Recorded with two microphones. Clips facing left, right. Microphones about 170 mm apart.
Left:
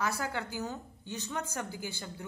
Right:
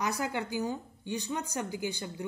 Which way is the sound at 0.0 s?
15° right (ahead or behind).